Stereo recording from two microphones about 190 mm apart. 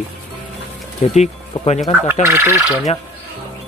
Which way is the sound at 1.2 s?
35° left (ahead or behind).